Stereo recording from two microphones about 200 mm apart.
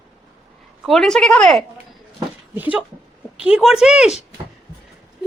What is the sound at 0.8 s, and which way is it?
Speech, centre (ahead or behind).